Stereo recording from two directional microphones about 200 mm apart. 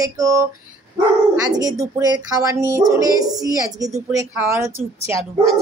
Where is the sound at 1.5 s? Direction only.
20° right (ahead or behind).